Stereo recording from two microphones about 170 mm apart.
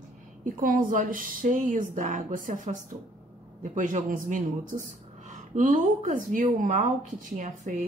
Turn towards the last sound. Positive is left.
turn(degrees=-45)  # may be behind; listen again after turning